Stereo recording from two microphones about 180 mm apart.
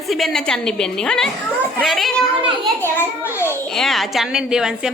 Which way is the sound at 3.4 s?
15° left (ahead or behind).